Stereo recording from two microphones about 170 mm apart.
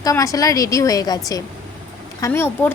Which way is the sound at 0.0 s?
20° left (ahead or behind).